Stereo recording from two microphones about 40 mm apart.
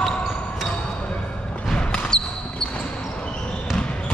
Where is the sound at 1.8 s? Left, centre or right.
Centre.